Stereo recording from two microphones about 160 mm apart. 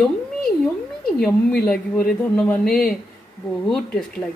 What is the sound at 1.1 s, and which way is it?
A woman's voice, 5° left (ahead or behind).